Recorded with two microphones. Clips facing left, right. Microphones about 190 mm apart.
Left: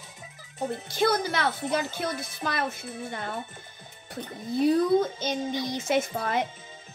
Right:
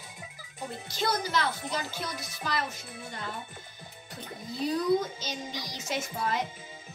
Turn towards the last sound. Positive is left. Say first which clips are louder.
# left 6 dB
turn(degrees=55)  # may be behind; listen again after turning